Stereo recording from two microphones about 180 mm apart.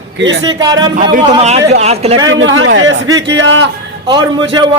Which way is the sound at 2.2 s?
90° right.